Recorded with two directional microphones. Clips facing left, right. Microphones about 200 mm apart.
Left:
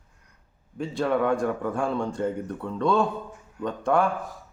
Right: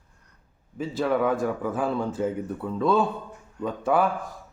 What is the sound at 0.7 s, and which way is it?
Speech, centre (ahead or behind).